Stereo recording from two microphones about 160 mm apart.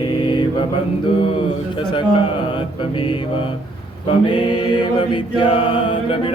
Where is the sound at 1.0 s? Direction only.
30° left (ahead or behind).